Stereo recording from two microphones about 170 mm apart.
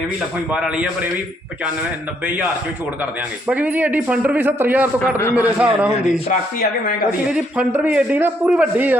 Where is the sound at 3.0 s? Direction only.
10° right (ahead or behind).